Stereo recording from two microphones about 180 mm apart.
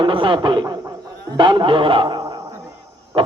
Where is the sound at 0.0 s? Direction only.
30° right (ahead or behind).